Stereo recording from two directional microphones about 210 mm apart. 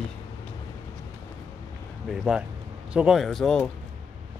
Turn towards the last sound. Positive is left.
turn(degrees=5)  # may be behind; listen again after turning